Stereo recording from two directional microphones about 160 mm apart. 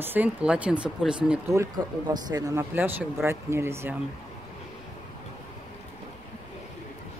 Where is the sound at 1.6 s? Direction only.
25° right (ahead or behind).